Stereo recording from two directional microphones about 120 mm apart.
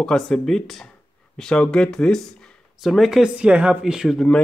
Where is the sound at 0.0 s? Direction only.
5° left (ahead or behind).